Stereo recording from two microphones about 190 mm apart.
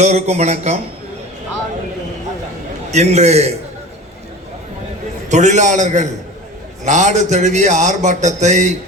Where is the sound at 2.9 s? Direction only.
35° right (ahead or behind).